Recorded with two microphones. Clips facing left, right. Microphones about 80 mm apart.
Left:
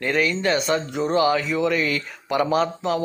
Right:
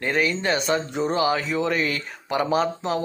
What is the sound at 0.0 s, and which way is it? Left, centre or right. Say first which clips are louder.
A man's voice: left 2 dB; right.